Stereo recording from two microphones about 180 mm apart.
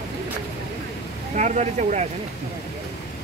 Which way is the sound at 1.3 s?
40° right (ahead or behind).